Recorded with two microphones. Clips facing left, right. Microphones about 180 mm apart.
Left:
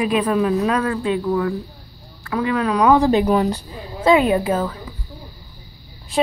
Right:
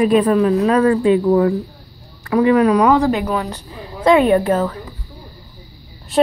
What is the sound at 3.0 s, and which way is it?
Speech, 30° left (ahead or behind).